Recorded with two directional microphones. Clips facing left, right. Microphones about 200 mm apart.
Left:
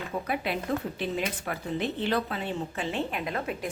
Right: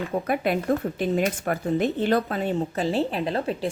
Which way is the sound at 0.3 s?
50° right (ahead or behind).